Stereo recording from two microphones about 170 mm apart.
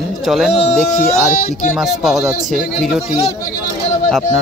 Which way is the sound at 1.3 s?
50° left (ahead or behind).